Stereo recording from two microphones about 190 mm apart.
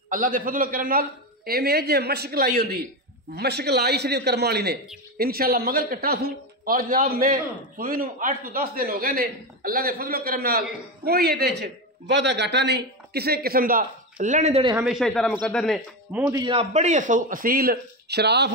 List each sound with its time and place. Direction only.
0.1 s a man's voice: 45° right (ahead or behind); by 14.8 s 30° right (ahead or behind)
14.9 s a man's voice: centre (ahead or behind)
16.3 s a man's voice: 20° right (ahead or behind)
16.5 s a man's voice: 40° right (ahead or behind); by 18.5 s 60° right (ahead or behind)